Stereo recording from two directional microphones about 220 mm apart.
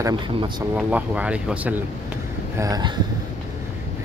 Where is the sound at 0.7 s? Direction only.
5° right (ahead or behind).